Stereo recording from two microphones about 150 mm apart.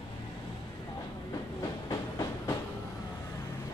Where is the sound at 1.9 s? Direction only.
25° left (ahead or behind).